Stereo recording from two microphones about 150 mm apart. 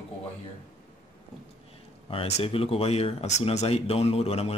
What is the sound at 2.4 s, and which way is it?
Speech, 40° left (ahead or behind).